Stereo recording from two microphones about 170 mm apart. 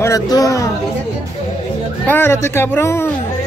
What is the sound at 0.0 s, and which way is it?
Speech, 20° left (ahead or behind).